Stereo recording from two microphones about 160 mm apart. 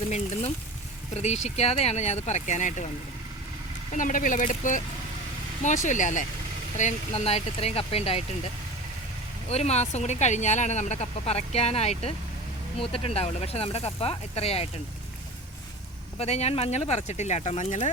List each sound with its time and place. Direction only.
1.1 s speech: 45° left (ahead or behind)
3.9 s speech: 55° left (ahead or behind); by 8.2 s 40° left (ahead or behind)
9.5 s speech: 40° left (ahead or behind)
16.1 s speech: 40° left (ahead or behind)